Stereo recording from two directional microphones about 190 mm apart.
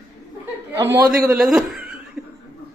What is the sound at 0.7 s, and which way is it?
Speech, 15° right (ahead or behind).